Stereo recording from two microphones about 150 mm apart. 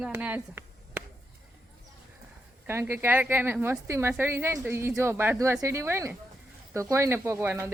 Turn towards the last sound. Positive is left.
turn(degrees=-15)  # may be behind; listen again after turning